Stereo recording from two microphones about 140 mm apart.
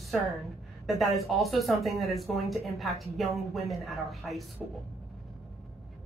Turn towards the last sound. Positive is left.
turn(degrees=0)  # may be behind; listen again after turning